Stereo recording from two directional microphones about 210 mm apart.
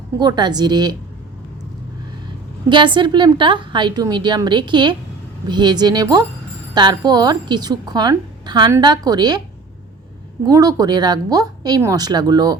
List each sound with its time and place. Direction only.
0.2 s a woman's voice: 20° right (ahead or behind)
2.6 s a woman's voice: 20° right (ahead or behind)
10.4 s a woman's voice: 15° right (ahead or behind)